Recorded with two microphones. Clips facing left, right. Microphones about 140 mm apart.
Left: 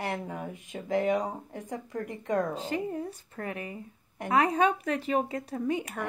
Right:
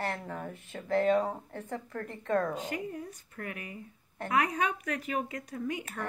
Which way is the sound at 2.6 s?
30° left (ahead or behind).